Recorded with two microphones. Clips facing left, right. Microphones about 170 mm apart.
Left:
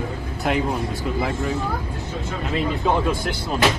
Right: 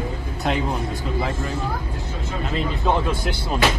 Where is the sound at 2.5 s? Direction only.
5° left (ahead or behind).